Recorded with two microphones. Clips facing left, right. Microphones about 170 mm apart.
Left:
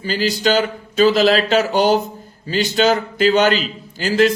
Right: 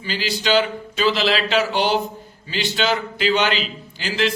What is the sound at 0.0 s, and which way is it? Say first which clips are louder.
Speech: left 6 dB; 40° left (ahead or behind).